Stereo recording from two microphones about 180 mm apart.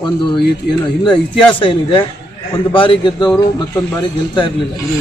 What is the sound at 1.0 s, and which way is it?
A man's voice, 25° left (ahead or behind).